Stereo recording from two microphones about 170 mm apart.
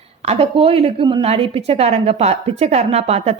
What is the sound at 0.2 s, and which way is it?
A woman's voice, 35° right (ahead or behind).